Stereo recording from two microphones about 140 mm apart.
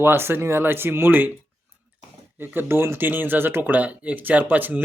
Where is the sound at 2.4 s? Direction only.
15° right (ahead or behind).